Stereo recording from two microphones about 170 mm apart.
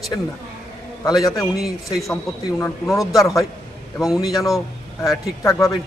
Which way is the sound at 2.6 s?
15° left (ahead or behind).